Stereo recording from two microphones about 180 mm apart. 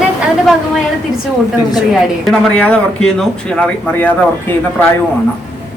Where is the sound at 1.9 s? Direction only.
5° left (ahead or behind).